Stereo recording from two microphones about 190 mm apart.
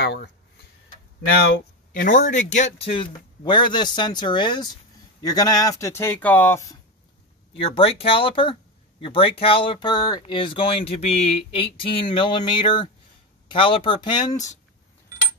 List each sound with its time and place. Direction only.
0.0 s speech: 60° left (ahead or behind)
1.9 s speech: 45° left (ahead or behind); by 6.8 s 15° left (ahead or behind)
7.6 s speech: 30° left (ahead or behind)